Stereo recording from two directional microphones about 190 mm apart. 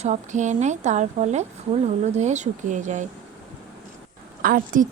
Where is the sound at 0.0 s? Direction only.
40° right (ahead or behind).